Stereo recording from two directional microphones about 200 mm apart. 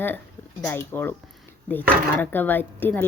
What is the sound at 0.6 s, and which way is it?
Speech, 10° left (ahead or behind).